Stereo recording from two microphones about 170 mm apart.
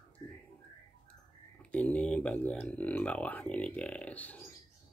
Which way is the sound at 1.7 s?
10° left (ahead or behind).